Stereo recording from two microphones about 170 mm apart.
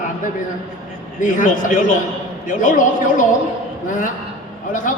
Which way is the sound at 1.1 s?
50° left (ahead or behind).